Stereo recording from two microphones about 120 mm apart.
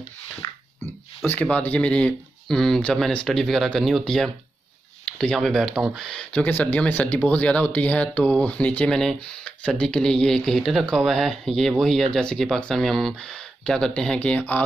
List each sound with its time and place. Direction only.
1.2 s speech: 15° left (ahead or behind)